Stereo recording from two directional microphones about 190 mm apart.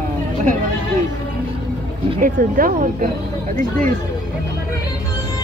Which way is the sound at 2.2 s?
45° right (ahead or behind).